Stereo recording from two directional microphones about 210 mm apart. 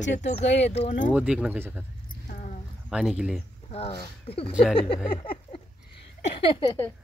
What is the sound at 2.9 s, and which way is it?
Speech, 5° right (ahead or behind).